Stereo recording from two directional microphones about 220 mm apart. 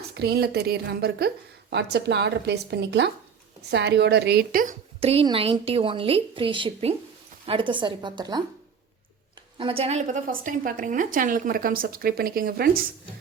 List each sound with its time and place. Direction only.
0.1 s a woman's voice: 45° right (ahead or behind); by 8.4 s 20° right (ahead or behind)
9.6 s a woman's voice: 25° right (ahead or behind); by 12.8 s 45° right (ahead or behind)